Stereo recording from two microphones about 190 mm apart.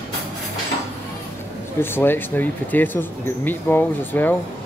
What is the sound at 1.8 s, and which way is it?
Speech, 10° left (ahead or behind).